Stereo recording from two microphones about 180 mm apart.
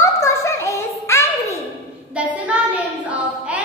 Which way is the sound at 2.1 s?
10° right (ahead or behind).